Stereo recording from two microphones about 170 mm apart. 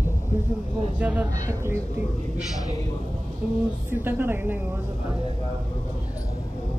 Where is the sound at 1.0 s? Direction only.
10° right (ahead or behind).